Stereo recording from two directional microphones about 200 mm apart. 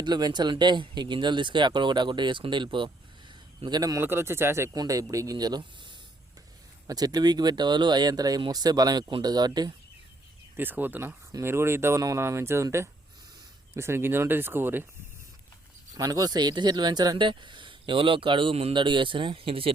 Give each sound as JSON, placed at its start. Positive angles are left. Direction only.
{"t": 0.0, "sound": "speech", "side_deg": -20}
{"t": 10.6, "sound": "speech", "side_deg": -10}
{"t": 16.0, "sound": "speech", "side_deg": -20}